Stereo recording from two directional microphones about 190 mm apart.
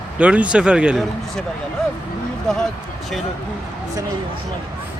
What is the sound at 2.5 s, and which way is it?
Speech, centre (ahead or behind).